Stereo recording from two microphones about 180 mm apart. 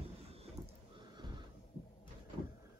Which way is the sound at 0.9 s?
25° right (ahead or behind).